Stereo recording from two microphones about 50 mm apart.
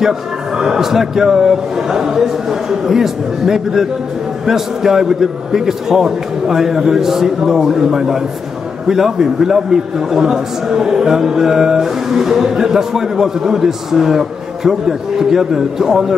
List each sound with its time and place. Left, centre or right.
0.6 s a man's voice: centre